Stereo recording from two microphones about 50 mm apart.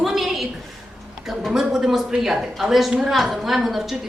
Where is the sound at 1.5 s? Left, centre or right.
Centre.